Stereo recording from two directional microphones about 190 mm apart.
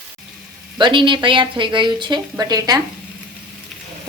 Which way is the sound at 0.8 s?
25° right (ahead or behind).